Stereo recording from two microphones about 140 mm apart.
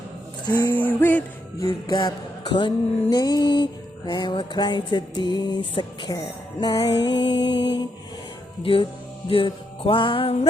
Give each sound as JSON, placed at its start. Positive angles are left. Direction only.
{"t": 0.4, "sound": "music", "side_deg": 30}
{"t": 0.7, "sound": "music", "side_deg": 15}
{"t": 1.9, "sound": "a sound", "side_deg": 30}
{"t": 3.1, "sound": "music", "side_deg": 30}